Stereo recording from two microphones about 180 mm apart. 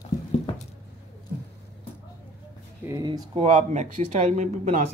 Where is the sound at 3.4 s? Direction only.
40° right (ahead or behind).